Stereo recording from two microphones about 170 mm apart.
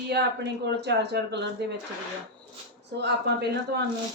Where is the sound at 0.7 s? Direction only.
90° right.